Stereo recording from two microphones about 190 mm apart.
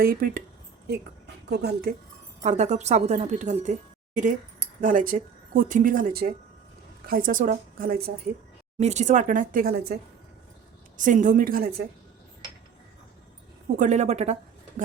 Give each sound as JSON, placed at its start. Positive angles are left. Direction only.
{"t": 0.0, "sound": "speech", "side_deg": -50}
{"t": 1.5, "sound": "speech", "side_deg": -60}
{"t": 2.4, "sound": "speech", "side_deg": -40}
{"t": 8.8, "sound": "speech", "side_deg": -35}
{"t": 10.9, "sound": "speech", "side_deg": -45}
{"t": 13.7, "sound": "speech", "side_deg": -40}